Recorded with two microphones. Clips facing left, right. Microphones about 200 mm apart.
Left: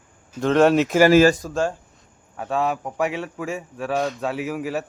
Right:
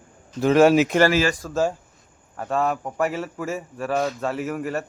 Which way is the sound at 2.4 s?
Centre (ahead or behind).